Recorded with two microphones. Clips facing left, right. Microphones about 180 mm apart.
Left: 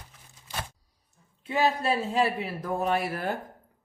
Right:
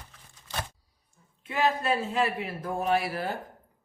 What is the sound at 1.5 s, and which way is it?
A woman's voice, 35° left (ahead or behind).